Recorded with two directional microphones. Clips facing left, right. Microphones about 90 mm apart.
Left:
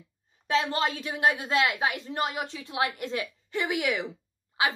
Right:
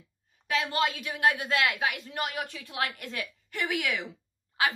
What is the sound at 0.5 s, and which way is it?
A woman's voice, 30° left (ahead or behind).